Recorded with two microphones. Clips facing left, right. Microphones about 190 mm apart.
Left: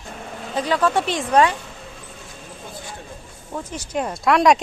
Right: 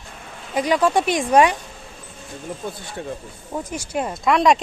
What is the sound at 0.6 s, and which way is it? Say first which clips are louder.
Speech: right 2 dB; 15° right (ahead or behind).